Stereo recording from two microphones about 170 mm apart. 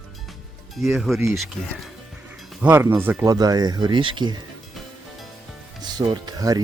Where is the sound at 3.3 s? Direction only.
20° right (ahead or behind).